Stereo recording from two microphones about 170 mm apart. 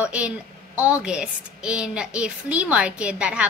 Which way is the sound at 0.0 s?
10° right (ahead or behind).